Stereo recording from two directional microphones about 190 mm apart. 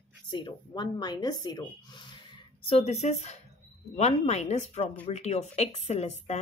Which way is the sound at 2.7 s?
35° left (ahead or behind).